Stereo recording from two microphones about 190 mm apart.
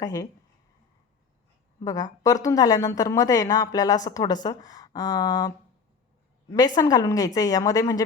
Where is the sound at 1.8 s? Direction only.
20° left (ahead or behind).